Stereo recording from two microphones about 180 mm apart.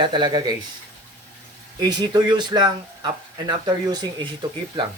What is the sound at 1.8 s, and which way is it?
Speech, 25° right (ahead or behind).